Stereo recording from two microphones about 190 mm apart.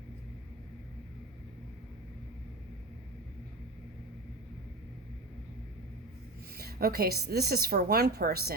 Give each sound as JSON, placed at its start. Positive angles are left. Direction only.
{"t": 6.6, "sound": "a woman's voice", "side_deg": -55}